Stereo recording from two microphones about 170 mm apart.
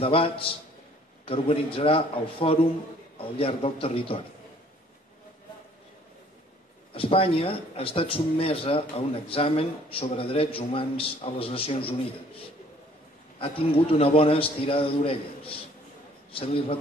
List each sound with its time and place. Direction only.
0.0 s speech: 35° left (ahead or behind)
6.9 s speech: 35° left (ahead or behind)
13.4 s a man's voice: 35° left (ahead or behind)